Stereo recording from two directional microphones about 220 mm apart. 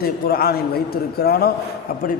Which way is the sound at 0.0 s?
45° left (ahead or behind).